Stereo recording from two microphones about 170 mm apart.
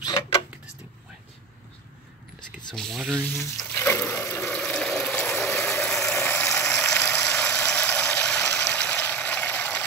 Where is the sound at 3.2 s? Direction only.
10° left (ahead or behind).